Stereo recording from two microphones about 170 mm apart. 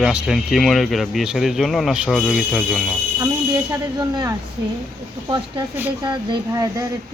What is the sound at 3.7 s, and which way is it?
Speech, 20° right (ahead or behind).